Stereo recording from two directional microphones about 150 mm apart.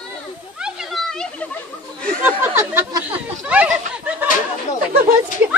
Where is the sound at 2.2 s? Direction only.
15° right (ahead or behind).